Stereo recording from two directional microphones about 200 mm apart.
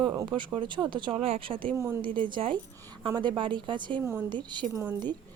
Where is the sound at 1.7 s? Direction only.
15° right (ahead or behind).